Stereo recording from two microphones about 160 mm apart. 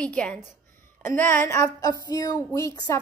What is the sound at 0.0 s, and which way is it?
A woman's voice, 5° left (ahead or behind).